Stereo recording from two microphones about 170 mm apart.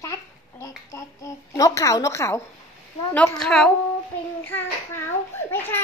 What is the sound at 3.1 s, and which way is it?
Speech, 5° left (ahead or behind).